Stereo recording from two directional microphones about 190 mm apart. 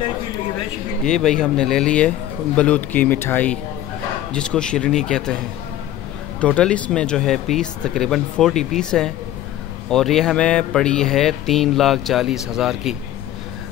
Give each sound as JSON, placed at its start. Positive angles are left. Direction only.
{"t": 1.0, "sound": "speech", "side_deg": 5}
{"t": 6.4, "sound": "speech", "side_deg": 5}